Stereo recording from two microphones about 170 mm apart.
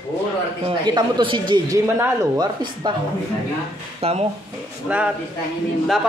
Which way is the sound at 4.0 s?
35° right (ahead or behind).